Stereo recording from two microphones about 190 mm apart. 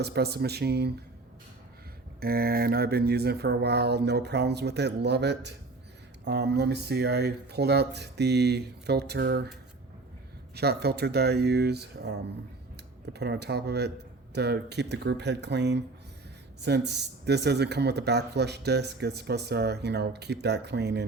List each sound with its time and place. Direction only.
0.0 s speech: 55° right (ahead or behind)
2.2 s speech: 50° right (ahead or behind)
10.5 s speech: 55° right (ahead or behind)
13.1 s speech: 60° right (ahead or behind)